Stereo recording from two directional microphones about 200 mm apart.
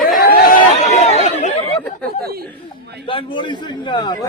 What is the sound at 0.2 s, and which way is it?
Chatter, 50° left (ahead or behind).